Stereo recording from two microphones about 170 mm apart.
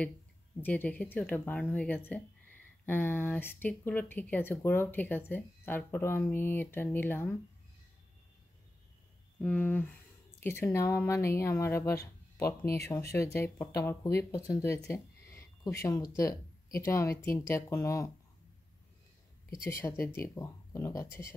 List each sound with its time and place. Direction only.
0.6 s speech: 10° left (ahead or behind)
9.4 s speech: 10° left (ahead or behind)
14.9 s a sound: 15° left (ahead or behind)
16.8 s speech: 15° left (ahead or behind)
19.6 s speech: 15° left (ahead or behind)